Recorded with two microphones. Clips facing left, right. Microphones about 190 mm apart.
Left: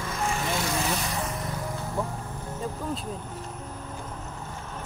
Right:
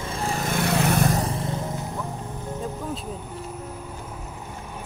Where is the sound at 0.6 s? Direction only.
60° right (ahead or behind).